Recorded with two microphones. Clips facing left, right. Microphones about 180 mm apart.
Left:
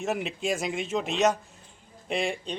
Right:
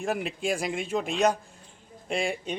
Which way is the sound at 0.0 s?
Centre (ahead or behind).